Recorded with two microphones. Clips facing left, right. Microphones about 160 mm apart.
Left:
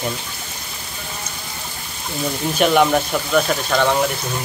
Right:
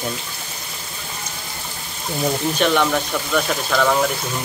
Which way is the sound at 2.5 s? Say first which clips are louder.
Left 5 dB; 15° left (ahead or behind).